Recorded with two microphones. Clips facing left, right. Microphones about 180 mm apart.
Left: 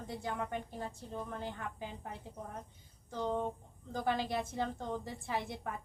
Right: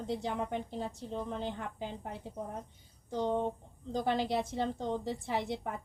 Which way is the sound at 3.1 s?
20° right (ahead or behind).